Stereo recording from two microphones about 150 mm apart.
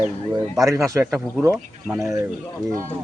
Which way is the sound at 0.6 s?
20° right (ahead or behind).